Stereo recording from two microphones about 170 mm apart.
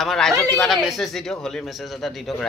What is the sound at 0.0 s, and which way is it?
A man's voice, centre (ahead or behind).